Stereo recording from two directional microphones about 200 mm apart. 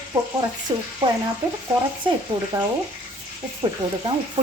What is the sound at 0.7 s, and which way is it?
Speech, 25° right (ahead or behind).